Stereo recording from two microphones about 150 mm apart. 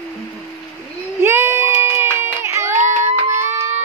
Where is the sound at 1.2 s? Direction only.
15° right (ahead or behind).